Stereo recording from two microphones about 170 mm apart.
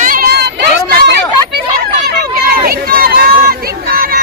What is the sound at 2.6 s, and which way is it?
Run, 60° right (ahead or behind).